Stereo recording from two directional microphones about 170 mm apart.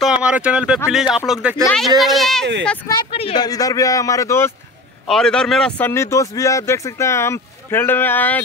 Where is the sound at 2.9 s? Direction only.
35° left (ahead or behind).